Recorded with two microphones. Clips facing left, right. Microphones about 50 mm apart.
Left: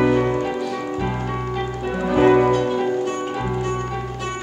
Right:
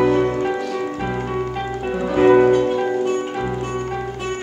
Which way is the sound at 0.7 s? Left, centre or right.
Centre.